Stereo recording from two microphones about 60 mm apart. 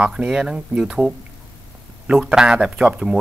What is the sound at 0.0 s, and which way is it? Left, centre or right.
Speech, centre.